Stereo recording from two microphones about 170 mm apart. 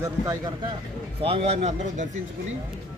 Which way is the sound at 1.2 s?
35° right (ahead or behind).